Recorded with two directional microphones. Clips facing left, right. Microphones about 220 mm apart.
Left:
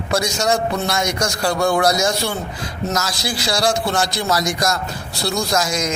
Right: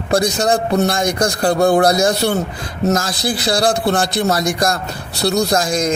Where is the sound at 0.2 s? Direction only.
55° right (ahead or behind).